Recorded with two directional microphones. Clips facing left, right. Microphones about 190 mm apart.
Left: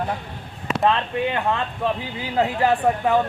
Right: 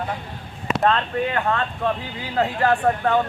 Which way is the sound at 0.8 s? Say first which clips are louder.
Even; 15° left (ahead or behind).